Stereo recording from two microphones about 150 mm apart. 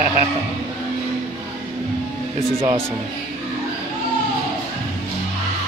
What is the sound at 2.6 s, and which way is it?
Speech, 20° right (ahead or behind).